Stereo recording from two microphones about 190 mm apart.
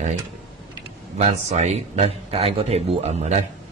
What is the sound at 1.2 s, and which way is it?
Speech, 35° right (ahead or behind).